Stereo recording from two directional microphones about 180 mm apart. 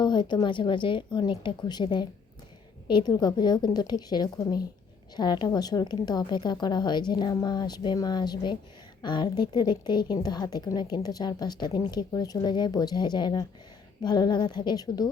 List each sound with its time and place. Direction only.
0.0 s a woman's voice: 25° left (ahead or behind)